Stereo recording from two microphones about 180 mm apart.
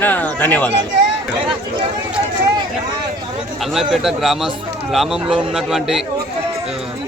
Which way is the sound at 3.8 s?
Centre (ahead or behind).